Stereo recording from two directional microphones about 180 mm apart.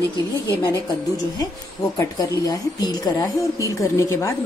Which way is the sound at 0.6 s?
20° left (ahead or behind).